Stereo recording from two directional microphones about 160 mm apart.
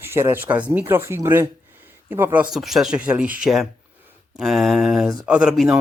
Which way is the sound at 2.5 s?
Centre (ahead or behind).